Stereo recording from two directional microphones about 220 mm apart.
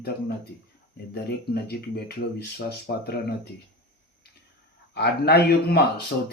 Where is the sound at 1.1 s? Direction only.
45° left (ahead or behind).